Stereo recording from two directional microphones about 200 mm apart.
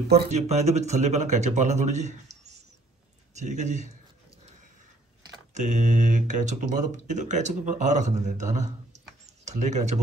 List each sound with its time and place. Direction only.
0.3 s speech: 35° right (ahead or behind)
5.5 s speech: 35° right (ahead or behind)